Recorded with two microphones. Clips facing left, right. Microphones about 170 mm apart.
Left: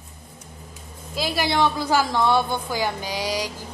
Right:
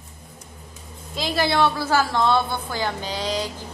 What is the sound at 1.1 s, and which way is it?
A woman's voice, 10° left (ahead or behind).